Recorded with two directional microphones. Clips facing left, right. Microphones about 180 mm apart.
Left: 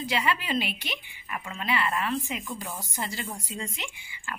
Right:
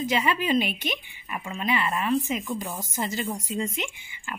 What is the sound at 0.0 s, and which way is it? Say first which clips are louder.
A woman's voice: right 4 dB; 20° right (ahead or behind).